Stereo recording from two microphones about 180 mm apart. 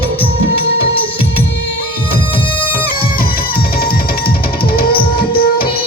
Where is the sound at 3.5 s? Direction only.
60° left (ahead or behind).